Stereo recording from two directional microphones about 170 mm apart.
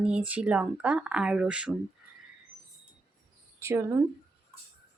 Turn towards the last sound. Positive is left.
turn(degrees=-15)  # may be behind; listen again after turning